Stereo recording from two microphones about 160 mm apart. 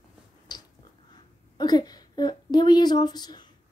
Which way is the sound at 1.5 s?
25° left (ahead or behind).